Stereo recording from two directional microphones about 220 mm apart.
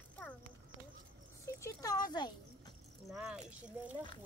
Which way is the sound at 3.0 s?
Centre (ahead or behind).